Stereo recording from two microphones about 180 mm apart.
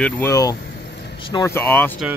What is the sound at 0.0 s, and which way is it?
Speech, 15° left (ahead or behind).